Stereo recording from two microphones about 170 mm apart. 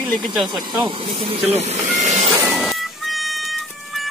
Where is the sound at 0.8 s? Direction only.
30° right (ahead or behind).